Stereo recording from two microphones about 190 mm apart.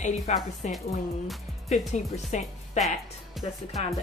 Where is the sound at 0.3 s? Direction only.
40° left (ahead or behind).